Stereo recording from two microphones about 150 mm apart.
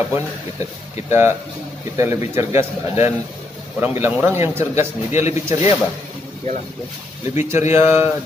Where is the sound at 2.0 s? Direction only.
20° right (ahead or behind).